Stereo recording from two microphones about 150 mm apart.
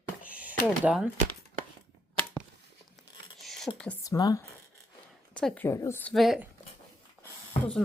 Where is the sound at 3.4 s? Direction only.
Centre (ahead or behind).